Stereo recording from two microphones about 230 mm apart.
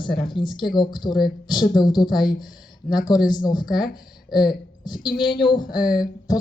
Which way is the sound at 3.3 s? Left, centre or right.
Centre.